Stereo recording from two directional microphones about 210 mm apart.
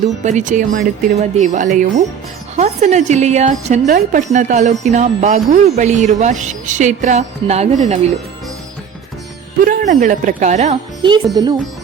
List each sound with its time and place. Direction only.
0.2 s a woman's voice: 35° right (ahead or behind)
9.6 s a woman's voice: 40° right (ahead or behind)